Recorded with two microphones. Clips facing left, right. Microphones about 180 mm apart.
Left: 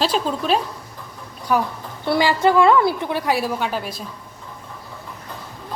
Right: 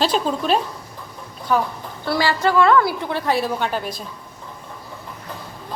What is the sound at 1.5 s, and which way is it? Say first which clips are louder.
A woman's voice: even; 10° left (ahead or behind).